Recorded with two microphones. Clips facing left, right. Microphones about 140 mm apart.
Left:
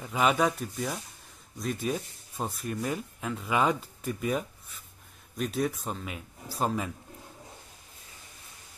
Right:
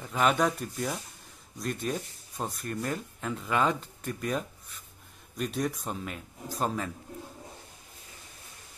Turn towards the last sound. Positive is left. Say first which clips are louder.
# left 1 dB
turn(degrees=5)  # may be behind; listen again after turning